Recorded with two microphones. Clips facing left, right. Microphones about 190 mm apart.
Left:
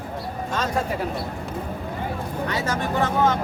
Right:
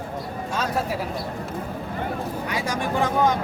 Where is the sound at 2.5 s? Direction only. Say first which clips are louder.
Left 1 dB; 10° right (ahead or behind).